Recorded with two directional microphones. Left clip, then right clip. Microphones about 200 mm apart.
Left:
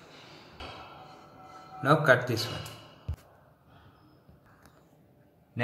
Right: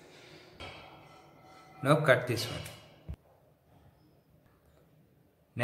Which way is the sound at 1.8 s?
15° right (ahead or behind).